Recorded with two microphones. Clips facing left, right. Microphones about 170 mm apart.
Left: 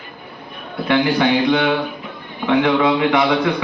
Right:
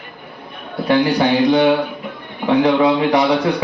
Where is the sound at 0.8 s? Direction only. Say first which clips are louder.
Right 1 dB; 35° right (ahead or behind).